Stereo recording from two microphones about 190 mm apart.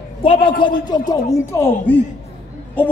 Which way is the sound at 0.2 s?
25° left (ahead or behind).